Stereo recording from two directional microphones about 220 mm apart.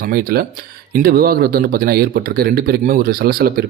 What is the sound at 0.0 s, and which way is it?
Speech, 40° right (ahead or behind).